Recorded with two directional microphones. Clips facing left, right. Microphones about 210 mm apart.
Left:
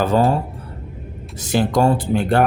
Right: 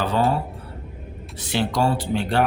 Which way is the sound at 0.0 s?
45° left (ahead or behind).